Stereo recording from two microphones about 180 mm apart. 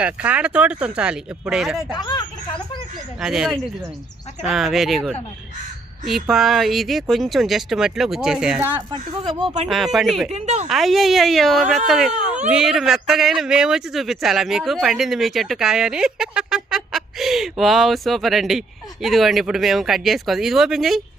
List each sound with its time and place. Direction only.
0.0 s speech: 10° right (ahead or behind)
2.0 s speech: 25° left (ahead or behind)
3.2 s speech: centre (ahead or behind)
8.9 s speech: 25° right (ahead or behind)
9.6 s speech: centre (ahead or behind)
10.3 s a woman's voice: 40° right (ahead or behind)
10.7 s speech: centre (ahead or behind)